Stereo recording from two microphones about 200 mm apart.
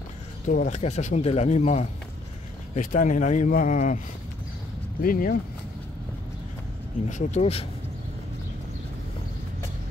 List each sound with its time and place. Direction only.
0.5 s speech: 40° left (ahead or behind)
5.0 s speech: 45° left (ahead or behind)
7.1 s speech: 35° left (ahead or behind)